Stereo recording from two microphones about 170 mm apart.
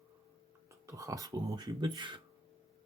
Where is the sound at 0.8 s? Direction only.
20° right (ahead or behind).